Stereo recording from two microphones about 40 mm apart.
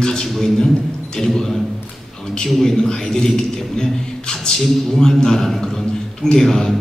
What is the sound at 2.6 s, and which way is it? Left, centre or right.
Speech, centre.